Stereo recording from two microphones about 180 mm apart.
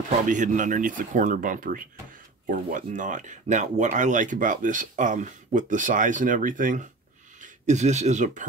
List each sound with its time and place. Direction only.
0.3 s speech: 45° right (ahead or behind)